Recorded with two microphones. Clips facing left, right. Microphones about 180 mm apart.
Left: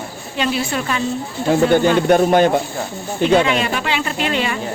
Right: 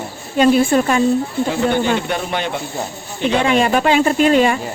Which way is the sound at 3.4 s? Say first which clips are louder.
Right 4 dB; 45° right (ahead or behind).